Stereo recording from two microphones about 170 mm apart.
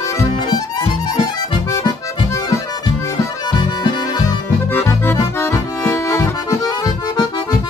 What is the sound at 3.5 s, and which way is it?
Music, 25° left (ahead or behind).